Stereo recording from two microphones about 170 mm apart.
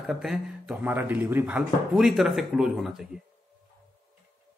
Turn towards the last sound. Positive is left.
turn(degrees=0)  # may be behind; listen again after turning